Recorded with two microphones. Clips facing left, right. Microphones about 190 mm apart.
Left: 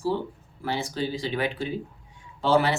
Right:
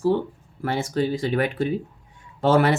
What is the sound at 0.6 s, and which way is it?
Speech, 55° right (ahead or behind).